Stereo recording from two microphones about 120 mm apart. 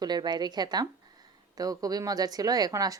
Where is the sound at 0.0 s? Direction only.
35° right (ahead or behind).